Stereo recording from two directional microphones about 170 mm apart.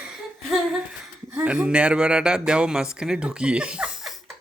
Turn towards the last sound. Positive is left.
turn(degrees=0)  # may be behind; listen again after turning